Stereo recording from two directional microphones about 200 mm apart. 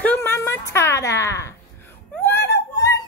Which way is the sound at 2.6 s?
15° left (ahead or behind).